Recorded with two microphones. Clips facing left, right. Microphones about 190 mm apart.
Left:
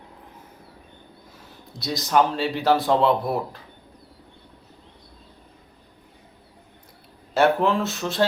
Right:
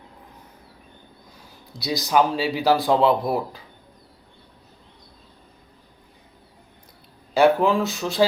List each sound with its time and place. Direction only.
1.7 s speech: centre (ahead or behind)
7.3 s speech: centre (ahead or behind)